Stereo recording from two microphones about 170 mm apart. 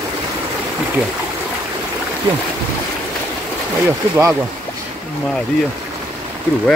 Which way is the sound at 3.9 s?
15° right (ahead or behind).